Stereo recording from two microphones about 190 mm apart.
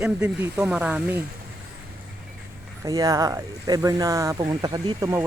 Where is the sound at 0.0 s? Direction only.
5° right (ahead or behind).